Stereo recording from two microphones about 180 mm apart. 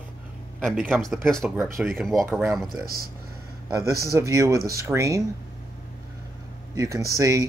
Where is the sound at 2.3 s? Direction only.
10° right (ahead or behind).